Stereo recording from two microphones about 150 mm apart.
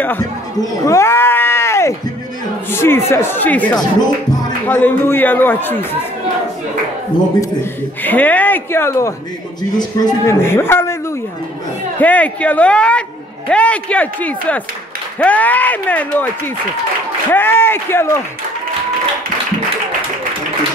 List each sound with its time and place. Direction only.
0.8 s a sound: 20° left (ahead or behind)
2.7 s speech: 15° left (ahead or behind)
8.0 s speech: 10° left (ahead or behind); by 10.3 s 25° left (ahead or behind)
10.4 s speech: 15° left (ahead or behind)
12.0 s speech: 10° left (ahead or behind)
17.3 s speech: 15° left (ahead or behind)